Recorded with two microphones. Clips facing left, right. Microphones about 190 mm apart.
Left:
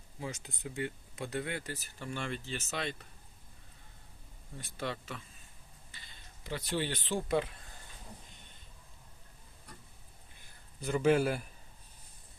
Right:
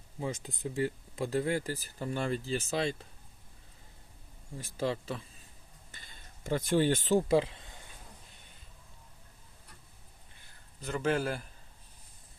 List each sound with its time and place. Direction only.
0.6 s speech: 35° right (ahead or behind)
4.5 s speech: 30° right (ahead or behind)
5.9 s a sound: 45° right (ahead or behind)
7.3 s speech: 30° right (ahead or behind)
10.8 s a man's voice: 10° left (ahead or behind)